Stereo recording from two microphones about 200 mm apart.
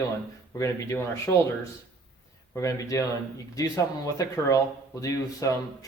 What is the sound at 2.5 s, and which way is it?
A man's voice, 15° left (ahead or behind).